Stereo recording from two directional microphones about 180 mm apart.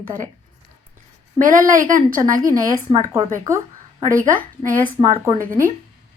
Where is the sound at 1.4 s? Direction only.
45° right (ahead or behind).